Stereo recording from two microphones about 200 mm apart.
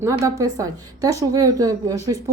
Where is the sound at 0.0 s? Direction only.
15° right (ahead or behind).